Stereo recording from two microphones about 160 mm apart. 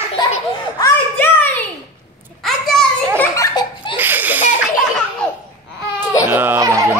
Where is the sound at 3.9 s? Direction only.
10° right (ahead or behind).